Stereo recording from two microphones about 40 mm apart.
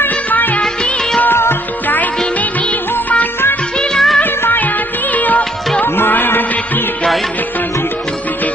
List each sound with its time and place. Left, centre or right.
0.3 s music of bollywood: left
1.3 s music: left
3.9 s music of bollywood: centre
5.1 s music: left
5.9 s music: left